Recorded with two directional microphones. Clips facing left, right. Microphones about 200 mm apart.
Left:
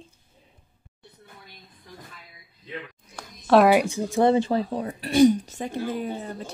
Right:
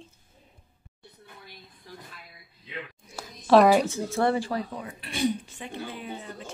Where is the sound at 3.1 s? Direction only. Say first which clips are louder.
Even; 5° right (ahead or behind).